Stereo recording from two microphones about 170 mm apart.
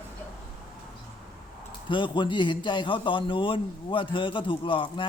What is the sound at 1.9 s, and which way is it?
A man's voice, 30° left (ahead or behind).